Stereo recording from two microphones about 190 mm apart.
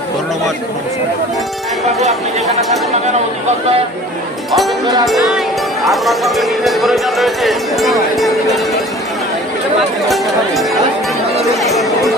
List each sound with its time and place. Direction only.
2.9 s speech: 35° right (ahead or behind)
4.5 s speech: centre (ahead or behind)
10.1 s speech: centre (ahead or behind)
11.7 s speech: centre (ahead or behind)